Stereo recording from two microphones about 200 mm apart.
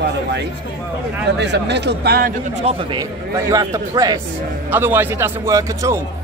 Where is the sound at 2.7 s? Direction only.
30° right (ahead or behind).